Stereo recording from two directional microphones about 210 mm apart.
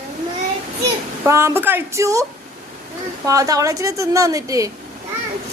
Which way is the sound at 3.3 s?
15° right (ahead or behind).